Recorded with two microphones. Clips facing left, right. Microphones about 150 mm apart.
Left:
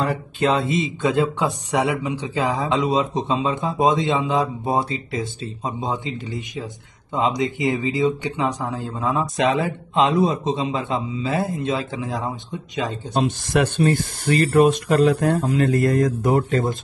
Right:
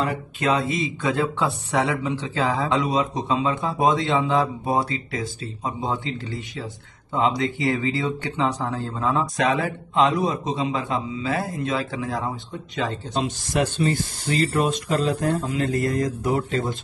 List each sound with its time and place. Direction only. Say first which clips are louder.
0.0 s speech: left 3 dB; 35° left (ahead or behind); by 13.2 s 15° left (ahead or behind)
13.5 s speech: left 3 dB; 60° left (ahead or behind)